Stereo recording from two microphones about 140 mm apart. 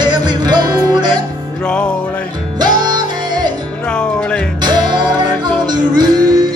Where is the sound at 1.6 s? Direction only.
5° left (ahead or behind).